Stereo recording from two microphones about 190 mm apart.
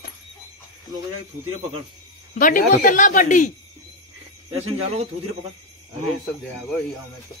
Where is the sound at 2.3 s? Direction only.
45° left (ahead or behind).